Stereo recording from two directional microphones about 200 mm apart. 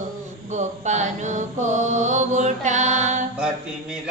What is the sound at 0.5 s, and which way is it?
Mantra, 35° right (ahead or behind).